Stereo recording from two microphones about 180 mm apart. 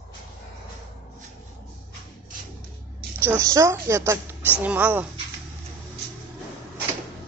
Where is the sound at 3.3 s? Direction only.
20° right (ahead or behind).